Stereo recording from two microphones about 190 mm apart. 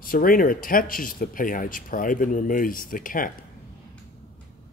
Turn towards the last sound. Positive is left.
turn(degrees=45)  # may be behind; listen again after turning